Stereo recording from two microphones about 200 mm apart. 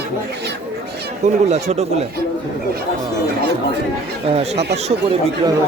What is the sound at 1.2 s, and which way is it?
Speech, 35° right (ahead or behind).